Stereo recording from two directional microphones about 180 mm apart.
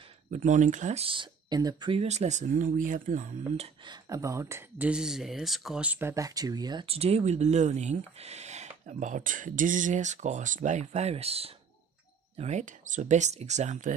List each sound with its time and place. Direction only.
0.3 s speech: 45° right (ahead or behind)